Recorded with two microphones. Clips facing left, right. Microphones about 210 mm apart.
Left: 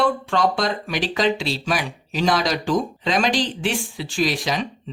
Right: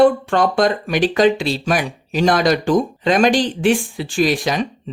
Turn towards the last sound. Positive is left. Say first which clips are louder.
# right 5 dB
turn(degrees=-50)  # may be behind; listen again after turning